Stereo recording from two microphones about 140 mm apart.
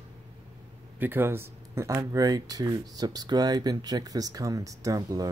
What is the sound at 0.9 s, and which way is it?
Speech, 15° right (ahead or behind).